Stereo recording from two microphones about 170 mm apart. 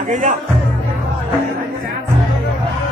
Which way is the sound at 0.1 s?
45° right (ahead or behind).